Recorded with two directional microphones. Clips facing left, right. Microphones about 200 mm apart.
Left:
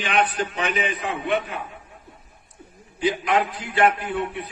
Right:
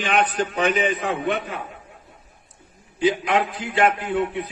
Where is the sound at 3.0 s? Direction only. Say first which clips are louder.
Right 2 dB; 20° right (ahead or behind).